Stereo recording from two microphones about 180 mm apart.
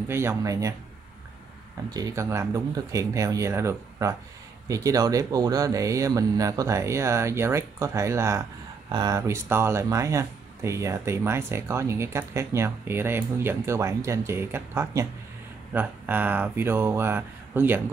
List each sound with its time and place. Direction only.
0.1 s speech: 15° right (ahead or behind)
2.0 s speech: 15° right (ahead or behind)